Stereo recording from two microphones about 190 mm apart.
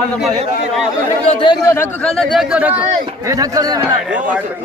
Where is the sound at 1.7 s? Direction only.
10° left (ahead or behind).